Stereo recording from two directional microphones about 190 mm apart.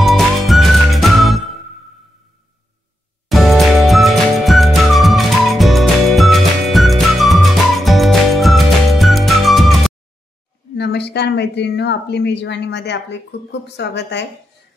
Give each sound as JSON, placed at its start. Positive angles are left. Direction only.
{"t": 0.0, "sound": "music", "side_deg": 0}
{"t": 3.3, "sound": "music", "side_deg": 0}
{"t": 10.8, "sound": "speech", "side_deg": 60}